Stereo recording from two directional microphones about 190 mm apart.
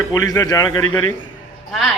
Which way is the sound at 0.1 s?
15° left (ahead or behind).